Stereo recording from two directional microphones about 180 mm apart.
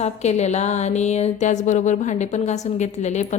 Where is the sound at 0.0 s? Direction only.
40° left (ahead or behind).